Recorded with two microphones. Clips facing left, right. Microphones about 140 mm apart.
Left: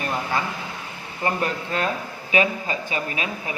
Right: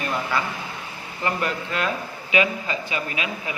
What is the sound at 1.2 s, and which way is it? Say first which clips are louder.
A man's voice: left 1 dB; 35° left (ahead or behind).